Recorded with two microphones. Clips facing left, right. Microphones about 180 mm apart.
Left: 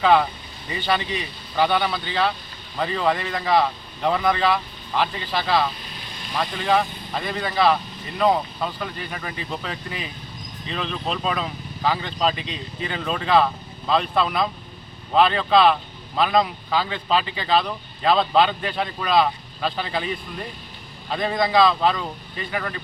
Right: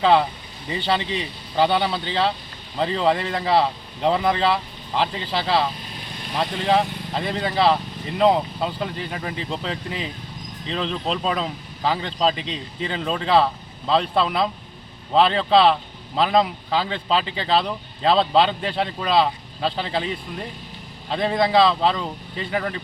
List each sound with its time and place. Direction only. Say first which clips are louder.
0.8 s a man's voice: right 1 dB; 25° right (ahead or behind)